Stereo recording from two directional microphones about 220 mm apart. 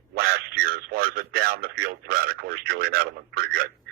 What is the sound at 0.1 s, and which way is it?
A man's voice, 45° right (ahead or behind).